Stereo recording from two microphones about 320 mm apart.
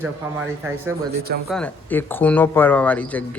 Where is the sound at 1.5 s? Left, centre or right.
Centre.